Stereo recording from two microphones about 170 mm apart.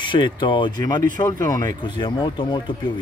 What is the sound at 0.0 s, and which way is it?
Speech, 30° left (ahead or behind).